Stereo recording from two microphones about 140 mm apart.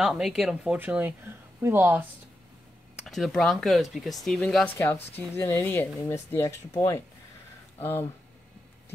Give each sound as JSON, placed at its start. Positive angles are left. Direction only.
{"t": 0.0, "sound": "speech", "side_deg": -5}
{"t": 3.0, "sound": "speech", "side_deg": 0}
{"t": 4.7, "sound": "speech", "side_deg": 15}
{"t": 7.8, "sound": "speech", "side_deg": 15}